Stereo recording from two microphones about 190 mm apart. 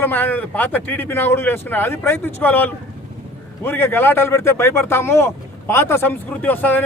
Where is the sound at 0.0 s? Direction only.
10° left (ahead or behind).